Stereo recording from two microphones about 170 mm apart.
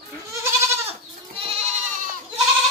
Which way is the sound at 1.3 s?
40° right (ahead or behind).